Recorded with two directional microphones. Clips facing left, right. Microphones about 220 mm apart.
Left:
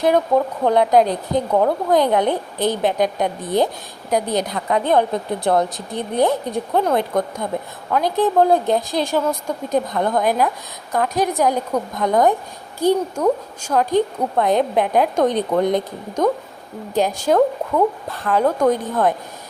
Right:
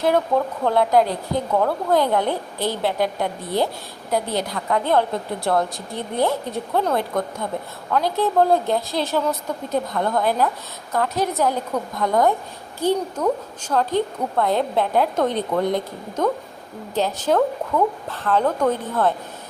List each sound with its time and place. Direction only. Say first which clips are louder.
0.0 s a woman's voice: left 3 dB; 15° left (ahead or behind)